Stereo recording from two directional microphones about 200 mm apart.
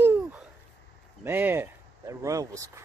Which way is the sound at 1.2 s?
10° right (ahead or behind).